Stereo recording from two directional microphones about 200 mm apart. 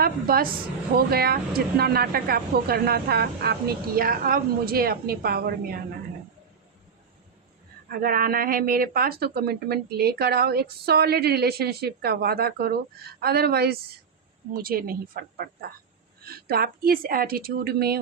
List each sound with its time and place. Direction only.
0.0 s speech: 50° right (ahead or behind)
7.9 s speech: 45° right (ahead or behind)